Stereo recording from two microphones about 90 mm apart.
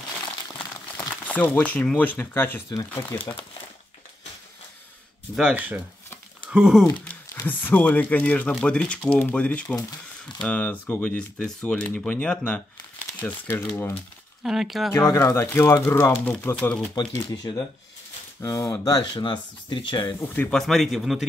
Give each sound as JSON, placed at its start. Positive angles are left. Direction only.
{"t": 1.2, "sound": "speech", "side_deg": 20}
{"t": 5.3, "sound": "speech", "side_deg": -10}
{"t": 7.4, "sound": "speech", "side_deg": 20}
{"t": 9.8, "sound": "speech", "side_deg": 45}
{"t": 10.5, "sound": "speech", "side_deg": 15}
{"t": 14.4, "sound": "a man's voice", "side_deg": -5}
{"t": 14.9, "sound": "speech", "side_deg": 30}
{"t": 16.5, "sound": "speech", "side_deg": 10}
{"t": 17.3, "sound": "speech", "side_deg": 50}
{"t": 18.4, "sound": "speech", "side_deg": 35}
{"t": 18.9, "sound": "speech", "side_deg": 60}
{"t": 20.2, "sound": "speech", "side_deg": 20}
{"t": 20.5, "sound": "a man's voice", "side_deg": 0}